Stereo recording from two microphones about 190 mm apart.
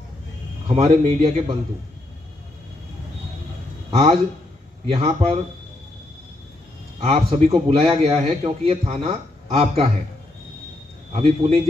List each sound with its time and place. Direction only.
0.7 s a man's voice: 30° right (ahead or behind)
3.9 s a man's voice: 25° right (ahead or behind)
7.0 s a man's voice: 30° right (ahead or behind)